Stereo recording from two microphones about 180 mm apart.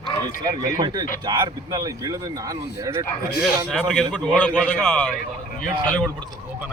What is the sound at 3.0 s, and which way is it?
Speech, 65° left (ahead or behind).